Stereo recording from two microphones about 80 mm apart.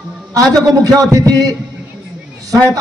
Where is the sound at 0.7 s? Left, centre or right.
Right.